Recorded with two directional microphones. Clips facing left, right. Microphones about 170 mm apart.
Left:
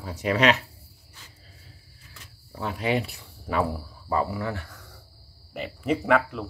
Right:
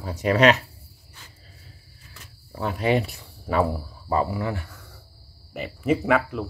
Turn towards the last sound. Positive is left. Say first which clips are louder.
# right 1 dB
turn(degrees=-5)  # may be behind; listen again after turning